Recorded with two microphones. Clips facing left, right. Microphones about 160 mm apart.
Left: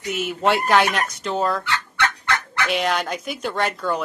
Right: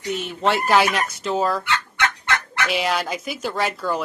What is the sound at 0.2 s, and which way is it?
A woman's voice, 5° left (ahead or behind).